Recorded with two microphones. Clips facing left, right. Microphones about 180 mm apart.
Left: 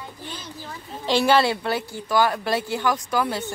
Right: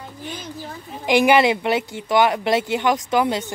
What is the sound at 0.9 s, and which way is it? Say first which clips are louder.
Speech: right 3 dB; 15° right (ahead or behind).